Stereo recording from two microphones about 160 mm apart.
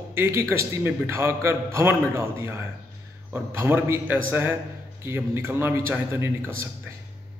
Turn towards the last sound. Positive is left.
turn(degrees=-15)  # may be behind; listen again after turning